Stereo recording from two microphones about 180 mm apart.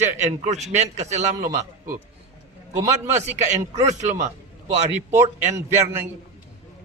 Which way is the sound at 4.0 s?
40° right (ahead or behind).